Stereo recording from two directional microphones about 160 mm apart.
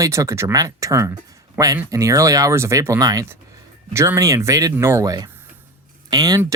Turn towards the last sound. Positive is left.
turn(degrees=-25)  # may be behind; listen again after turning